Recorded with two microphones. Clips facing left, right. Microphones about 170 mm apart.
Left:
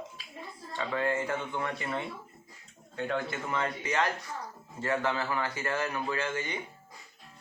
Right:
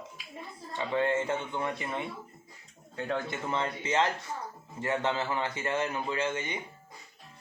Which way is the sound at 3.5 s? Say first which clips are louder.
Right 2 dB; 25° right (ahead or behind).